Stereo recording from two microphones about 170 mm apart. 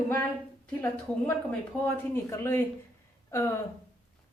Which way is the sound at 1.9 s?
15° left (ahead or behind).